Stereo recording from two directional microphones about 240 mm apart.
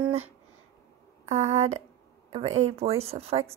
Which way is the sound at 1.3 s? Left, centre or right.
Right.